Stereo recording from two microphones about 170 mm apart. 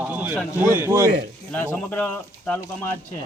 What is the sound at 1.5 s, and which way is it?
Speech, 10° left (ahead or behind).